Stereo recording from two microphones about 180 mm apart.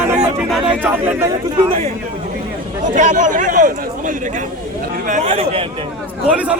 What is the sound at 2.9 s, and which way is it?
Speech, 45° right (ahead or behind).